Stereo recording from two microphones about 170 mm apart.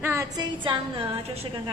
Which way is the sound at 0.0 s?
15° right (ahead or behind).